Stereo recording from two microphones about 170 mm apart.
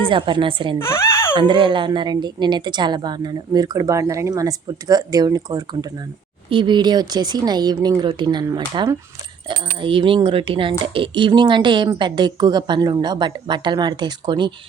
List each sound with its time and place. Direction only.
0.0 s speech: 30° right (ahead or behind)
0.9 s a sound: 15° left (ahead or behind)
1.4 s speech: 30° right (ahead or behind)